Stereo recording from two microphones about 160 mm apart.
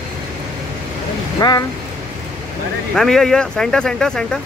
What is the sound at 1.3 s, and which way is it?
Speech, 25° left (ahead or behind).